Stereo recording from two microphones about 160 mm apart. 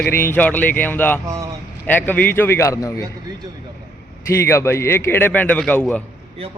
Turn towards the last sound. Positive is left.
turn(degrees=5)  # may be behind; listen again after turning